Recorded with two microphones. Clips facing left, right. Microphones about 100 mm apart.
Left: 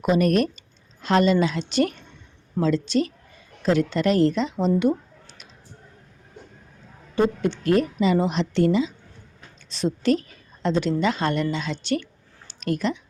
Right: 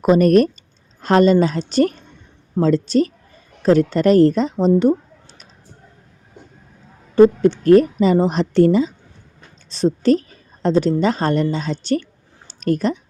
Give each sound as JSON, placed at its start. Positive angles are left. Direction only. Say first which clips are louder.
{"t": 0.0, "sound": "a woman's voice", "louder": "right 7 dB", "side_deg": -40}
{"t": 7.2, "sound": "a woman's voice", "louder": "right 10 dB", "side_deg": -40}
{"t": 12.5, "sound": "a sound", "louder": "right 6 dB", "side_deg": -40}